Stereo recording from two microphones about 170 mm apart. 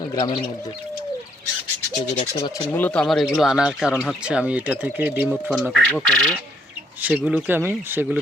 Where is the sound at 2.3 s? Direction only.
20° left (ahead or behind).